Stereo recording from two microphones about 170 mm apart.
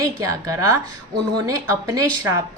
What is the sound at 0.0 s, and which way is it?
A woman's voice, 20° right (ahead or behind).